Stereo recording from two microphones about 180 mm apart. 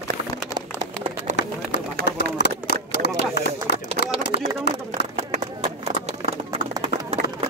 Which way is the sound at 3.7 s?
65° left (ahead or behind).